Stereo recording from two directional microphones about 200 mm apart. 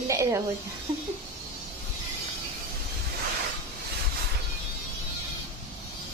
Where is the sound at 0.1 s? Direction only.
15° right (ahead or behind).